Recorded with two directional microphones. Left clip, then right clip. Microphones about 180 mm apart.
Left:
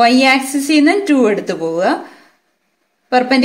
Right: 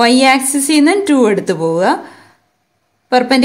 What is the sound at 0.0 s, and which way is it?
A woman's voice, 55° right (ahead or behind).